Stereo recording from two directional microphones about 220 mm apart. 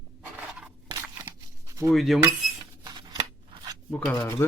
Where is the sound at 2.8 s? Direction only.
20° right (ahead or behind).